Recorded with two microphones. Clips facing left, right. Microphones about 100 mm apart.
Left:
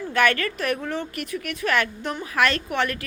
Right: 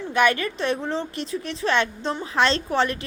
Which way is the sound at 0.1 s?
20° right (ahead or behind).